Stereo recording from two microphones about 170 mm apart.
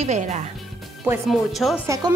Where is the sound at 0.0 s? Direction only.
45° right (ahead or behind).